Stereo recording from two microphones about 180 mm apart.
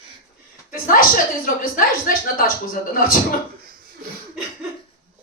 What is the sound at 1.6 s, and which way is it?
A man's voice, 50° left (ahead or behind).